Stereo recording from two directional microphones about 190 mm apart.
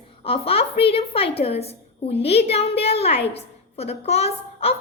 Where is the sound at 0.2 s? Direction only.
30° left (ahead or behind).